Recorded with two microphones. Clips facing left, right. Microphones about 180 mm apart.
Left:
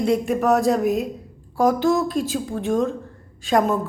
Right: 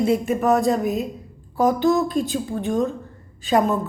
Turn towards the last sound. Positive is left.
turn(degrees=0)  # may be behind; listen again after turning